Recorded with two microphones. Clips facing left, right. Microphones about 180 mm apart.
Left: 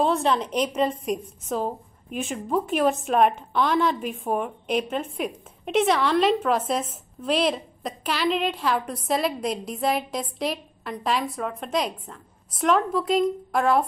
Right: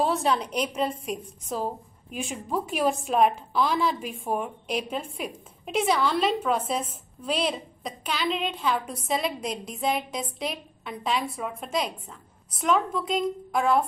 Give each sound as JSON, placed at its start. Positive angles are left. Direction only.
{"t": 0.0, "sound": "a woman's voice", "side_deg": 0}